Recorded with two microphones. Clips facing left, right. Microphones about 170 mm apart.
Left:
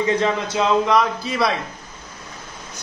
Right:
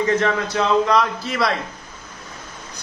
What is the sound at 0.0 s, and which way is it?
A man's voice, 15° left (ahead or behind).